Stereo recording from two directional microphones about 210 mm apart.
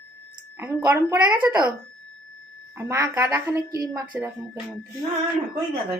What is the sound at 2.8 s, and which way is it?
A woman's voice, 15° right (ahead or behind).